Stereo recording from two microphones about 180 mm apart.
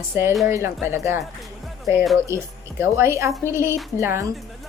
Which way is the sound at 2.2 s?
15° right (ahead or behind).